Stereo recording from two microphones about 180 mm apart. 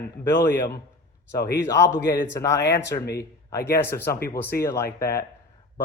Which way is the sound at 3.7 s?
15° left (ahead or behind).